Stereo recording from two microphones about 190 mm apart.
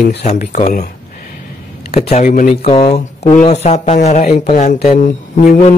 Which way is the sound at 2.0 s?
35° left (ahead or behind).